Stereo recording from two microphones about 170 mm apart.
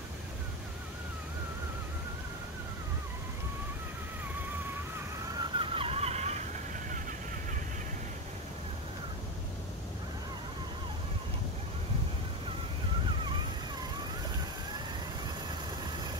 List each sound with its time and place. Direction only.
5.4 s vehicle: 30° right (ahead or behind)